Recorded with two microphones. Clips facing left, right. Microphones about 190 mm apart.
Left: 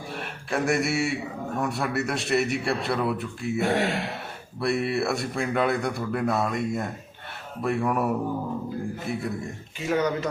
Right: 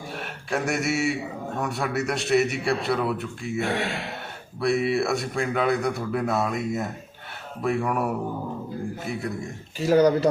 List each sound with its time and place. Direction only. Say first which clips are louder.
0.2 s a man's voice: left 1 dB; centre (ahead or behind)
9.8 s speech: right 6 dB; 35° right (ahead or behind)